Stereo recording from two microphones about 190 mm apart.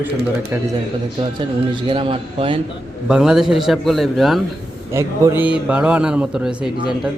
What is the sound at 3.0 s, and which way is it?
Speech, 5° right (ahead or behind).